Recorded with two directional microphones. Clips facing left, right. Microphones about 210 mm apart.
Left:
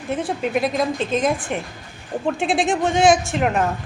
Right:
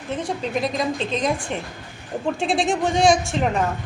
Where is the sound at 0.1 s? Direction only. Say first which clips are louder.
Left 3 dB; 5° left (ahead or behind).